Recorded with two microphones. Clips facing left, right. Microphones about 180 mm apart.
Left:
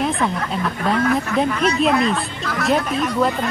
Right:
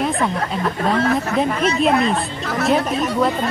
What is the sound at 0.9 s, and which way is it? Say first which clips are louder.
Speech: left 1 dB; 30° right (ahead or behind).